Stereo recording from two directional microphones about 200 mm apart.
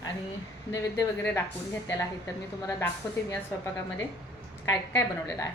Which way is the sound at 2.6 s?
15° left (ahead or behind).